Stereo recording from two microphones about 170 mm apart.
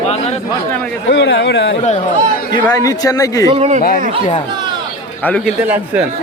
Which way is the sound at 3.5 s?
40° right (ahead or behind).